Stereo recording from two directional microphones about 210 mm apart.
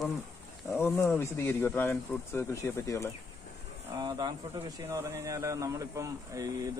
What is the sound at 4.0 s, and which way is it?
Speech, 20° right (ahead or behind).